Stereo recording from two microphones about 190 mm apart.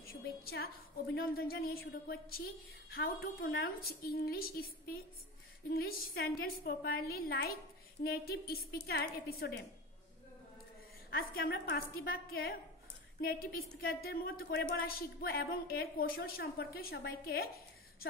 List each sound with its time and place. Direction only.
0.0 s a woman's voice: 55° left (ahead or behind)
11.1 s a woman's voice: 55° left (ahead or behind)